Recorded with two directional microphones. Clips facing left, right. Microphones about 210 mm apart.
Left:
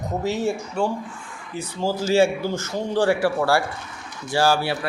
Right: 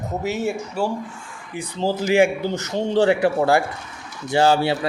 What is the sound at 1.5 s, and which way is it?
Speech, 15° right (ahead or behind).